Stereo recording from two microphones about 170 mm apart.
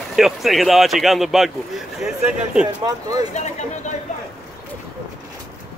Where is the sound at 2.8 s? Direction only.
25° right (ahead or behind).